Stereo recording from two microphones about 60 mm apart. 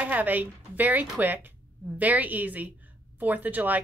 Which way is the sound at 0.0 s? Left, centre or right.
Right.